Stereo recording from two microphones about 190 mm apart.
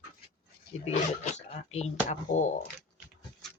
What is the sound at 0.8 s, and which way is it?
Speech, 35° left (ahead or behind).